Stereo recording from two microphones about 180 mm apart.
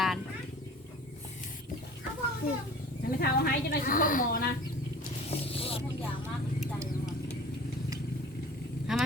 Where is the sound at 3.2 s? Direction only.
60° left (ahead or behind).